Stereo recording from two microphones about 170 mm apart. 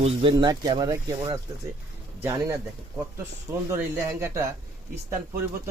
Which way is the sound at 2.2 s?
15° right (ahead or behind).